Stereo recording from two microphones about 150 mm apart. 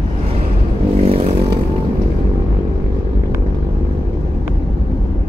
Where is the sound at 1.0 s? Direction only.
40° right (ahead or behind).